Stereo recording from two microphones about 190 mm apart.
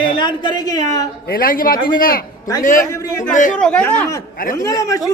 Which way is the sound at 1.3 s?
50° left (ahead or behind).